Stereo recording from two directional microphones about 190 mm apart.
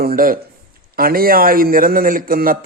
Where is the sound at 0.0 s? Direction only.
50° right (ahead or behind).